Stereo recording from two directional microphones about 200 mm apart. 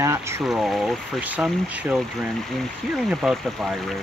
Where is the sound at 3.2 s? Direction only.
Centre (ahead or behind).